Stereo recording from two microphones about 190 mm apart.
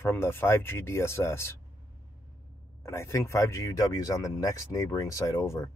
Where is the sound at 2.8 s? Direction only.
15° left (ahead or behind).